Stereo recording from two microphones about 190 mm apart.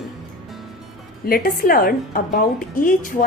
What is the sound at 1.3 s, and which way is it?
A woman's voice, 50° left (ahead or behind).